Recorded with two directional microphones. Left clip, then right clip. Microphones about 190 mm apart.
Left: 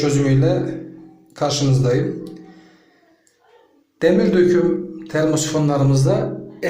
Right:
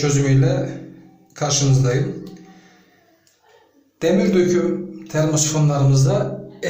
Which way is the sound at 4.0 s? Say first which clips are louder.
Left 2 dB; 15° left (ahead or behind).